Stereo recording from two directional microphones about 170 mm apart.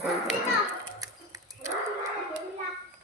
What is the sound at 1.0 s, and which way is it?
Dog, 20° right (ahead or behind).